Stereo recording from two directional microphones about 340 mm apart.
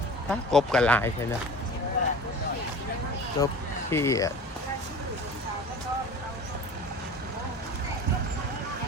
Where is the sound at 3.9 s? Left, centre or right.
Centre.